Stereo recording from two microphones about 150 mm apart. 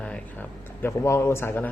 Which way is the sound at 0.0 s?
10° left (ahead or behind).